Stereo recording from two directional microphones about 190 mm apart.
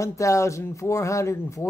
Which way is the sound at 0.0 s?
15° left (ahead or behind).